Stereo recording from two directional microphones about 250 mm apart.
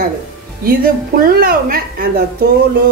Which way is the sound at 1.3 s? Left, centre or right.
Right.